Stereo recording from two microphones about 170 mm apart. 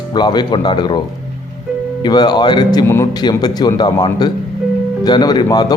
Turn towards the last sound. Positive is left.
turn(degrees=25)  # may be behind; listen again after turning